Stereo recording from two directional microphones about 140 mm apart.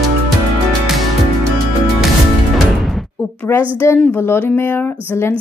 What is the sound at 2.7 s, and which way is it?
Music, centre (ahead or behind).